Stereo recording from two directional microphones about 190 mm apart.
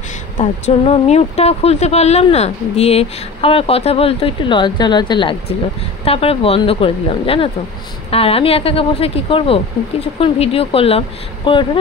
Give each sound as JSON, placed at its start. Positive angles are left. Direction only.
{"t": 0.4, "sound": "speech", "side_deg": 35}